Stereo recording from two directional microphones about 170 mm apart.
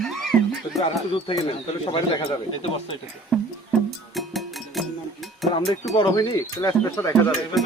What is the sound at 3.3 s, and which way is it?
Music, centre (ahead or behind).